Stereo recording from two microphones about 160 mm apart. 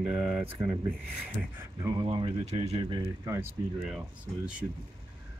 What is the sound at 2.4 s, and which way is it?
Speech, 45° right (ahead or behind).